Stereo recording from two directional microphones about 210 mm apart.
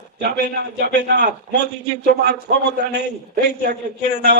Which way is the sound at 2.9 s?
50° right (ahead or behind).